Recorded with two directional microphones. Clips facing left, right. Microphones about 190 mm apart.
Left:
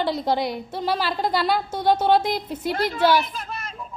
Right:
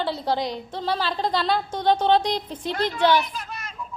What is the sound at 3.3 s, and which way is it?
Child singing, 55° left (ahead or behind).